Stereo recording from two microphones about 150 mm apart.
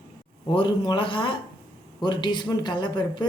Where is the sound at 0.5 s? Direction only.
35° left (ahead or behind).